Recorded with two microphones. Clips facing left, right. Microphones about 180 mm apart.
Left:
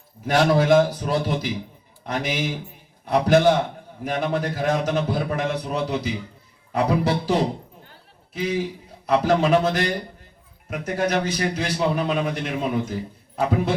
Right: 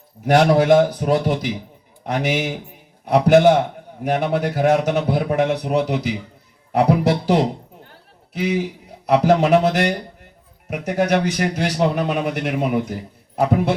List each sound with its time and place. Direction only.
0.3 s a man's voice: 70° right (ahead or behind)